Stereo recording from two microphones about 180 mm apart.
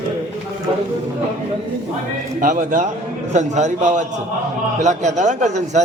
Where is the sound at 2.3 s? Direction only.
45° right (ahead or behind).